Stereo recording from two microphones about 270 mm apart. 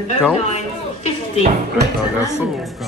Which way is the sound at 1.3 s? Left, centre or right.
Right.